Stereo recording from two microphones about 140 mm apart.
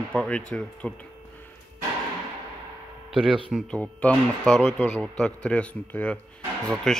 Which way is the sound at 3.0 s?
Centre (ahead or behind).